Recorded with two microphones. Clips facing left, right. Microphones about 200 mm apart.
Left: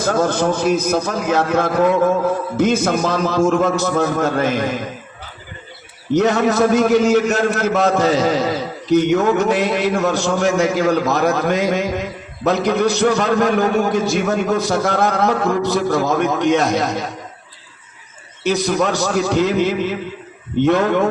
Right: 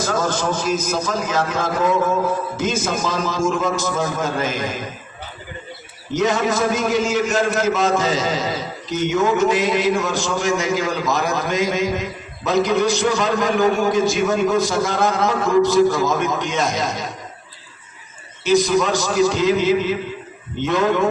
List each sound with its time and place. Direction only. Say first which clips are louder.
0.0 s a man's voice: left 4 dB; 55° left (ahead or behind)
6.1 s a man's voice: left 4 dB; 65° left (ahead or behind)
18.4 s a man's voice: right 1 dB; 60° left (ahead or behind)